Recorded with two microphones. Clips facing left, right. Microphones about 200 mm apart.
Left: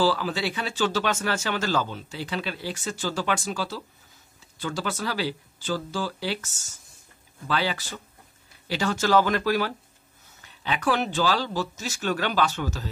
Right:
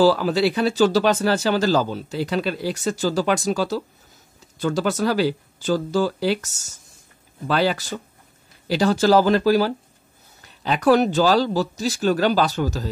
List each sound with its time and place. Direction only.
0.0 s speech: 40° right (ahead or behind)